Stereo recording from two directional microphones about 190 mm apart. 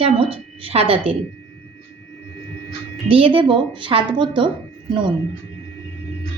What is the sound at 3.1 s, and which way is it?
A woman's voice, 30° right (ahead or behind).